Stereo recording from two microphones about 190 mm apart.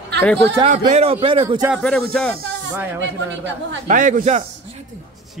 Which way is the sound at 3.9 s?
45° right (ahead or behind).